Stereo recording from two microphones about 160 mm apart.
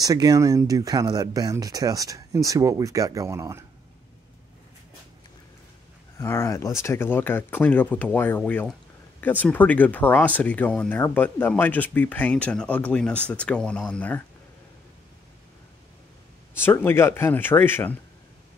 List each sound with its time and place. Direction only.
0.0 s speech: 20° right (ahead or behind)
6.1 s speech: 15° left (ahead or behind)
16.5 s speech: 15° left (ahead or behind)